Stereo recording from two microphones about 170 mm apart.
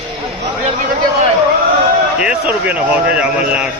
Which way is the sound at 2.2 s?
5° right (ahead or behind).